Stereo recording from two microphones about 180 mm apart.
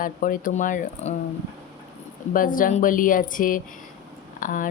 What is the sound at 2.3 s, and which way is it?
Speech, 50° left (ahead or behind).